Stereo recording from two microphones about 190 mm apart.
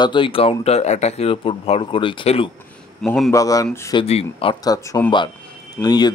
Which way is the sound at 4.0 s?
30° left (ahead or behind).